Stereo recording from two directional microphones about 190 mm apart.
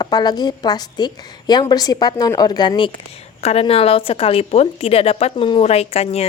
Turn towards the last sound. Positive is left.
turn(degrees=35)  # may be behind; listen again after turning